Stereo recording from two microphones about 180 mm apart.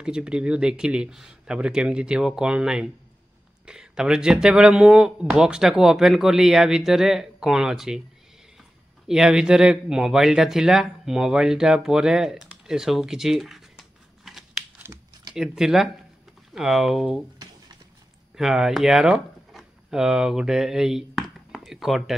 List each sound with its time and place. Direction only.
0.0 s speech: 5° right (ahead or behind)
9.0 s speech: 5° right (ahead or behind)
14.2 s scissors: centre (ahead or behind)
14.8 s computer keyboard: 15° right (ahead or behind)
15.3 s speech: 5° right (ahead or behind)
18.3 s speech: centre (ahead or behind)